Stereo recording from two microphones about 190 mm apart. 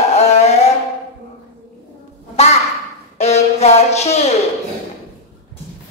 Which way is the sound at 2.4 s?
35° left (ahead or behind).